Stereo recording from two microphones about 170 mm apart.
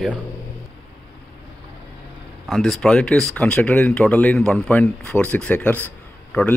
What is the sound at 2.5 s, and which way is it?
A man's voice, centre (ahead or behind).